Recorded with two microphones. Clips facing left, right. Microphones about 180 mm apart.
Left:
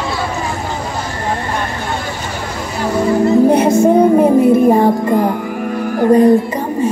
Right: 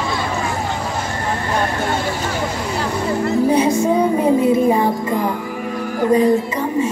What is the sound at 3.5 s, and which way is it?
Music, 60° left (ahead or behind).